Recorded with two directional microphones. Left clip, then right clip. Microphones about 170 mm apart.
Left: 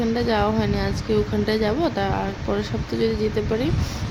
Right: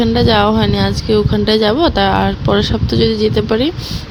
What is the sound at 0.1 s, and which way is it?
Speech, 40° right (ahead or behind).